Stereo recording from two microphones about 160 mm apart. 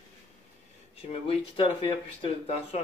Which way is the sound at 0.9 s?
35° left (ahead or behind).